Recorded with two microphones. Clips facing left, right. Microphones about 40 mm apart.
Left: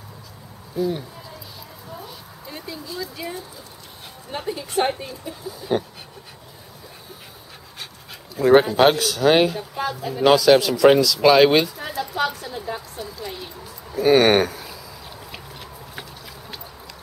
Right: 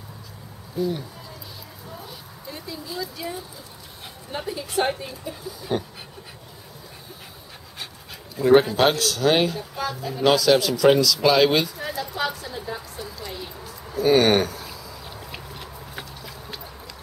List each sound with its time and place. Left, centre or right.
0.8 s speech: centre
2.4 s a sound: centre
4.8 s speech: centre
8.4 s speech: centre
9.6 s speech: left
10.2 s speech: centre
13.7 s a sound: centre